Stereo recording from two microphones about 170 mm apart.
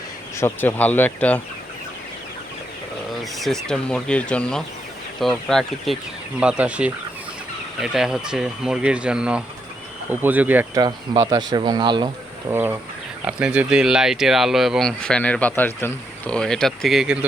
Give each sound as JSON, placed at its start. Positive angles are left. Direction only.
{"t": 0.3, "sound": "speech", "side_deg": 15}
{"t": 3.3, "sound": "speech", "side_deg": 0}
{"t": 10.8, "sound": "speech", "side_deg": -25}
{"t": 12.5, "sound": "speech", "side_deg": -15}